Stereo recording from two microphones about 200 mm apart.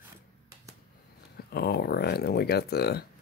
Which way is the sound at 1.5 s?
50° left (ahead or behind).